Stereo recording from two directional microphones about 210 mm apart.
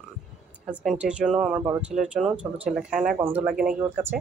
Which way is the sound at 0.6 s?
5° right (ahead or behind).